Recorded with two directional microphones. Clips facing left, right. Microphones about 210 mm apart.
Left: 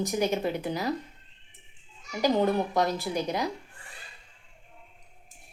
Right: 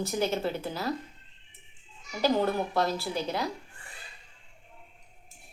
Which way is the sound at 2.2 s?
15° left (ahead or behind).